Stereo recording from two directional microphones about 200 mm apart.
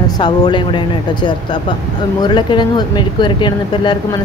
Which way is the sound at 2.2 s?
20° left (ahead or behind).